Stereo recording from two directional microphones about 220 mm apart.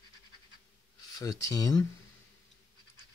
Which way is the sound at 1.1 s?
15° left (ahead or behind).